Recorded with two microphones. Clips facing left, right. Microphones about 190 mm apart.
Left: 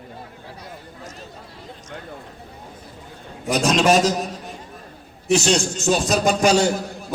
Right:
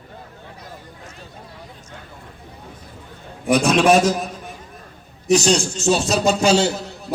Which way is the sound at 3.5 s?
55° right (ahead or behind).